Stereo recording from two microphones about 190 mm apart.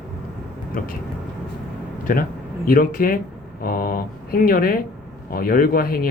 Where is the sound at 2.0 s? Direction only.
45° left (ahead or behind).